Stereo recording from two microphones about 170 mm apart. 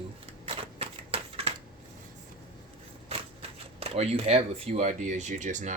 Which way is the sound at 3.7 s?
35° right (ahead or behind).